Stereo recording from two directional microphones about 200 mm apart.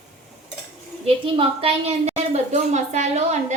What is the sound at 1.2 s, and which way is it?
A woman's voice, 25° right (ahead or behind).